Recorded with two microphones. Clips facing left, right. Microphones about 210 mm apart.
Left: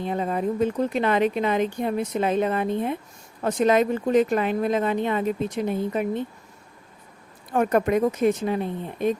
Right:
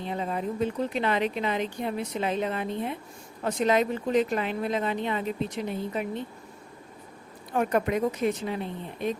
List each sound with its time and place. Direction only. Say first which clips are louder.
0.0 s speech: left 5 dB; 50° left (ahead or behind)
7.5 s speech: left 5 dB; 50° left (ahead or behind)